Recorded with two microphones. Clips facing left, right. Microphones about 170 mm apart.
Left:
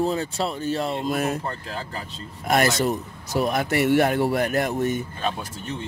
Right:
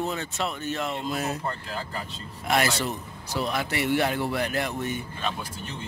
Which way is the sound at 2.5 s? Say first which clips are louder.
Left 5 dB; 45° left (ahead or behind).